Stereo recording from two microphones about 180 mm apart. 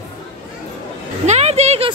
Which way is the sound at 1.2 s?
35° right (ahead or behind).